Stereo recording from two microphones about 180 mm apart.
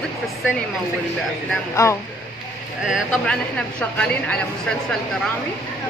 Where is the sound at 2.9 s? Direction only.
5° left (ahead or behind).